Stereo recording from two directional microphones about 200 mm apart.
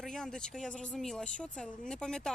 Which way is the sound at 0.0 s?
Centre (ahead or behind).